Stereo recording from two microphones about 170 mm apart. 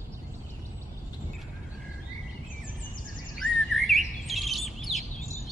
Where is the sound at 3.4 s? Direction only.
Centre (ahead or behind).